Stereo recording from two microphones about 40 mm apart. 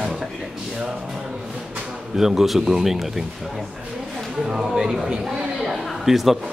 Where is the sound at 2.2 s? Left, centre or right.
Centre.